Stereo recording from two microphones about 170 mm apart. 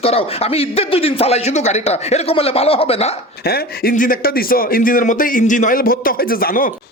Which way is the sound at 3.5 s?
55° left (ahead or behind).